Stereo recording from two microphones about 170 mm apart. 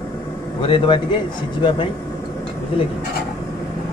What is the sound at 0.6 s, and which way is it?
Speech, 30° left (ahead or behind).